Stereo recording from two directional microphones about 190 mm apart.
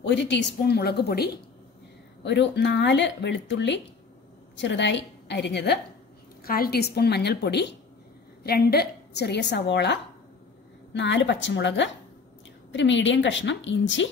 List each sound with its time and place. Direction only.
0.0 s a woman's voice: 65° left (ahead or behind)
6.4 s a woman's voice: 50° left (ahead or behind); by 14.1 s 75° left (ahead or behind)